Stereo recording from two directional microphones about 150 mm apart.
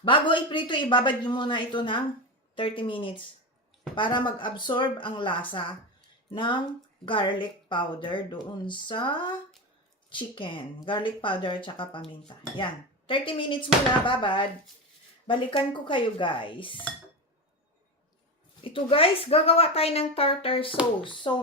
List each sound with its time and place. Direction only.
0.0 s speech: 35° left (ahead or behind)
18.6 s speech: 35° left (ahead or behind)